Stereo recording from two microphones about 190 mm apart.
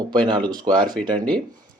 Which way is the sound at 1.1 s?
5° left (ahead or behind).